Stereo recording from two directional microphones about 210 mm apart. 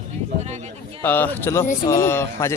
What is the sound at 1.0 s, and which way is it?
Speech, 10° left (ahead or behind).